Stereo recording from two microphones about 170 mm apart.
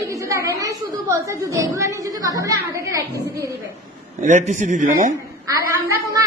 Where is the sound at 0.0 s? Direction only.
20° right (ahead or behind).